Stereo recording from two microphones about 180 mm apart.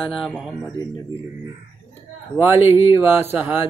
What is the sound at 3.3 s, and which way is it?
Speech, 10° right (ahead or behind).